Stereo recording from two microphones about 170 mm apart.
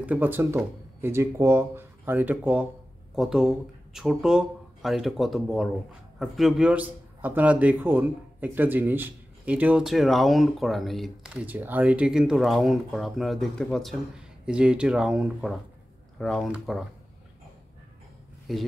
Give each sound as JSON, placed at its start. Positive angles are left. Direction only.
{"t": 0.0, "sound": "speech", "side_deg": -10}
{"t": 11.4, "sound": "speech", "side_deg": -10}
{"t": 18.5, "sound": "speech", "side_deg": 0}